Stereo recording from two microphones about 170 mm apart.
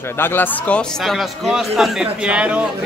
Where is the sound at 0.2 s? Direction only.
10° left (ahead or behind).